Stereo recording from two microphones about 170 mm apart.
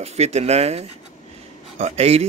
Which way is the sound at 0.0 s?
40° right (ahead or behind).